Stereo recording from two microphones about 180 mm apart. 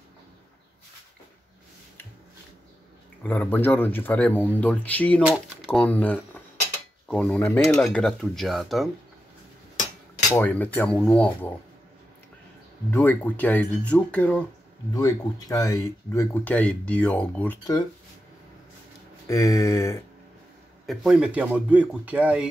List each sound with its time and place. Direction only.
3.3 s speech: 10° left (ahead or behind)
10.3 s speech: 10° left (ahead or behind)
12.9 s speech: 10° left (ahead or behind)
15.0 s speech: 20° left (ahead or behind)
19.2 s speech: 15° left (ahead or behind)
20.8 s speech: centre (ahead or behind)